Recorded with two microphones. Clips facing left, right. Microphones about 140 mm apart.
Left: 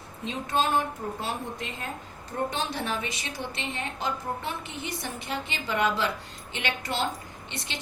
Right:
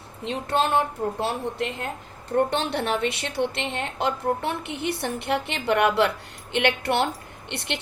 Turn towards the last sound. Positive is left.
turn(degrees=-65)  # may be behind; listen again after turning